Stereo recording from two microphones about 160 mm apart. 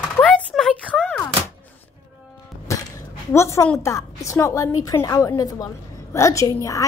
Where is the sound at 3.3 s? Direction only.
15° left (ahead or behind).